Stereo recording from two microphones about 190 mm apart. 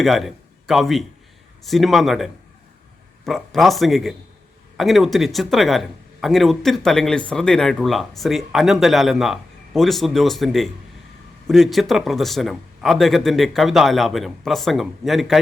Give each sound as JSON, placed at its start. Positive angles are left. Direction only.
{"t": 0.0, "sound": "speech", "side_deg": 0}